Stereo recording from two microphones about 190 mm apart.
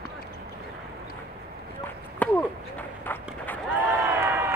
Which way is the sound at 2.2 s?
10° left (ahead or behind).